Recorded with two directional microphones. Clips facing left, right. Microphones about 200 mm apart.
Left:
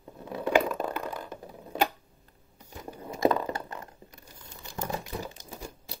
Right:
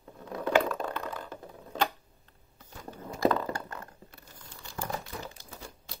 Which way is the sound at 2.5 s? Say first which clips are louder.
Left 2 dB; 15° left (ahead or behind).